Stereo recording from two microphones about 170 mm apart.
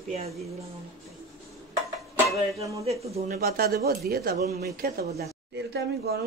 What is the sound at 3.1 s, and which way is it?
Speech, 45° right (ahead or behind).